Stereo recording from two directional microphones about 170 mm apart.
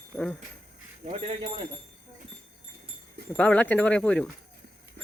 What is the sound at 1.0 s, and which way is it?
Speech, 35° right (ahead or behind).